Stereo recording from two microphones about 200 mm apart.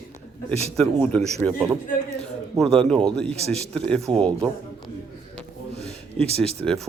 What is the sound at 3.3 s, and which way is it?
Speech, 30° right (ahead or behind).